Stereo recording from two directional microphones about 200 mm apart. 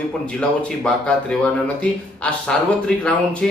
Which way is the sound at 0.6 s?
5° left (ahead or behind).